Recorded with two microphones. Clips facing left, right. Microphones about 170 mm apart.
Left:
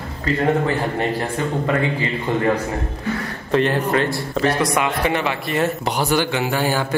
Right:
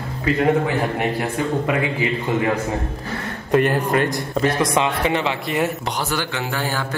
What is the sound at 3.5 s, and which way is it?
A man's voice, 10° right (ahead or behind).